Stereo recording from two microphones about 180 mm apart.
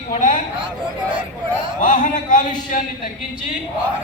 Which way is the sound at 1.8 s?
45° left (ahead or behind).